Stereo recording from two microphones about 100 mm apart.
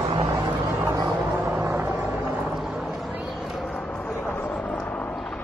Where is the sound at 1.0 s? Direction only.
15° right (ahead or behind).